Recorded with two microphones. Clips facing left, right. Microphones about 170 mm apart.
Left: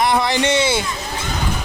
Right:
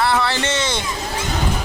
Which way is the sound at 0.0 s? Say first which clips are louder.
Left 2 dB; 15° left (ahead or behind).